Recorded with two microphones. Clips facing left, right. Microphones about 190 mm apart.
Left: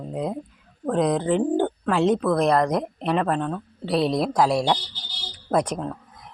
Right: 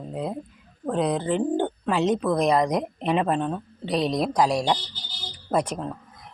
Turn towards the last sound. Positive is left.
turn(degrees=0)  # may be behind; listen again after turning